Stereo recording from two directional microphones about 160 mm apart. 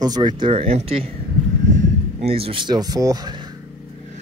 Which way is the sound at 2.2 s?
35° right (ahead or behind).